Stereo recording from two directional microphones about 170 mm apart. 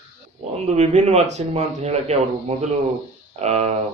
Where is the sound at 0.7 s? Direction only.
40° right (ahead or behind).